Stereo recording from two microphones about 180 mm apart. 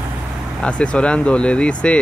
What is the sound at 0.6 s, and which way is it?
Speech, 5° left (ahead or behind).